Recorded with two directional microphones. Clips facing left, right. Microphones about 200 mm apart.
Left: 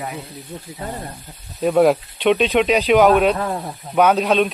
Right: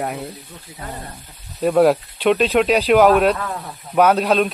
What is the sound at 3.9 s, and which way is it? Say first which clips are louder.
Speech: even; centre (ahead or behind).